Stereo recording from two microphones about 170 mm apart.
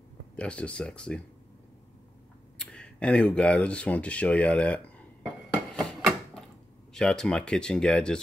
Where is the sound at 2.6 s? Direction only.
5° left (ahead or behind).